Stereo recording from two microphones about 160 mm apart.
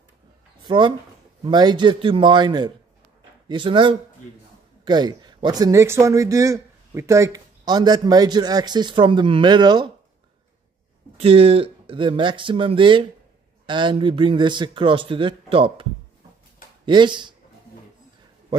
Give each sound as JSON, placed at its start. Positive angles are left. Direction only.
{"t": 0.6, "sound": "speech", "side_deg": -30}
{"t": 11.1, "sound": "speech", "side_deg": -35}